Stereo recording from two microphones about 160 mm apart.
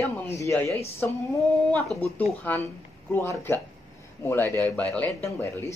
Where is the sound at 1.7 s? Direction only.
5° left (ahead or behind).